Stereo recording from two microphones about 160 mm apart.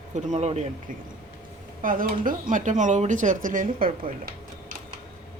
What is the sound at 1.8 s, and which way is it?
Speech, 60° right (ahead or behind).